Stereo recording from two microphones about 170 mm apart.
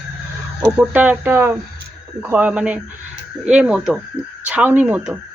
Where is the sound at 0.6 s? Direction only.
15° right (ahead or behind).